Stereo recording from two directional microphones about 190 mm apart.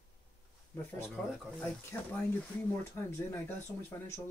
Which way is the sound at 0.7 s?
10° left (ahead or behind).